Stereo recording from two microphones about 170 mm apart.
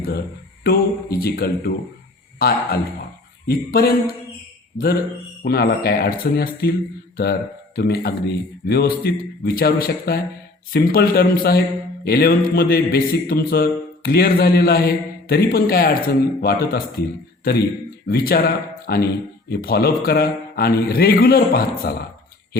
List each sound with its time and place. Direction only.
0.6 s speech: 65° left (ahead or behind)
7.8 s a man's voice: 70° left (ahead or behind)
18.1 s speech: 60° left (ahead or behind)